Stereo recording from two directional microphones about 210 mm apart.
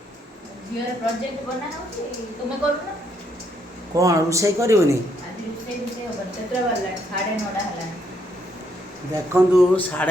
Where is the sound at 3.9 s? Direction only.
15° right (ahead or behind).